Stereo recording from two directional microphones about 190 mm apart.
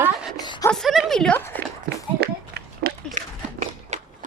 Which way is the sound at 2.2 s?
55° right (ahead or behind).